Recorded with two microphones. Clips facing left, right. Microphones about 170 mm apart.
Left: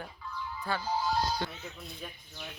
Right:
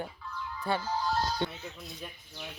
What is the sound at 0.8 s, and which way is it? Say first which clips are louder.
Speech: left 1 dB; 10° left (ahead or behind).